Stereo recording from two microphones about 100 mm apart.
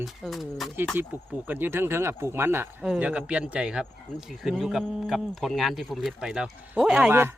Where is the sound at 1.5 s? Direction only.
20° right (ahead or behind).